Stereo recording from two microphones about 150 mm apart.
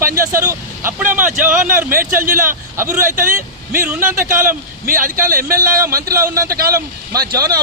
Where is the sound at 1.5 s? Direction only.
65° right (ahead or behind).